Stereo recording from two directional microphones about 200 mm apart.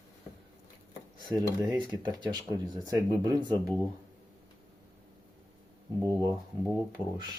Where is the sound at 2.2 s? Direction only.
20° right (ahead or behind).